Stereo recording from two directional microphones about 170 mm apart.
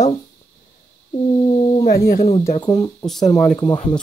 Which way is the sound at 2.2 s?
35° left (ahead or behind).